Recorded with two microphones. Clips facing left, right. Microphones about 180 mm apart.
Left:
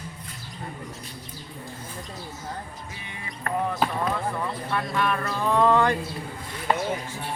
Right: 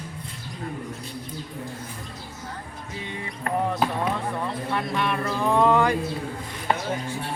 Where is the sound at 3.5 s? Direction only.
20° right (ahead or behind).